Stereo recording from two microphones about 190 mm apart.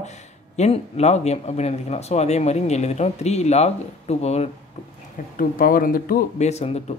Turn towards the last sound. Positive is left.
turn(degrees=35)  # may be behind; listen again after turning